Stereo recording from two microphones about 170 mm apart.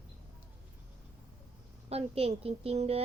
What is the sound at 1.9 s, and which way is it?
A woman's voice, 35° right (ahead or behind).